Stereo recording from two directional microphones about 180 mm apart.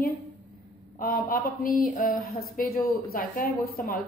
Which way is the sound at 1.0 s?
50° left (ahead or behind).